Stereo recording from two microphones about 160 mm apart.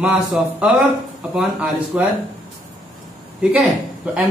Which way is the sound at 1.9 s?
10° right (ahead or behind).